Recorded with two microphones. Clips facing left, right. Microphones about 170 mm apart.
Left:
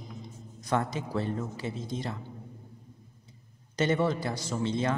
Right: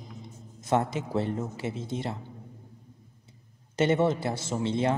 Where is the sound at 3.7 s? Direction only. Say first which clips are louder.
Right 3 dB; 25° right (ahead or behind).